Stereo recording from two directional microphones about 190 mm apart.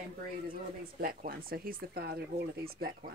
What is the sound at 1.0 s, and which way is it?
Speech, 50° right (ahead or behind).